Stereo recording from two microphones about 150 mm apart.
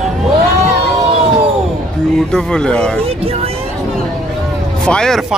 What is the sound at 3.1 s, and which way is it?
Vehicle, 40° right (ahead or behind).